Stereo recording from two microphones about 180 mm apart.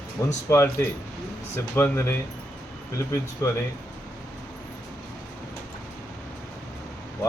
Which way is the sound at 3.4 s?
15° left (ahead or behind).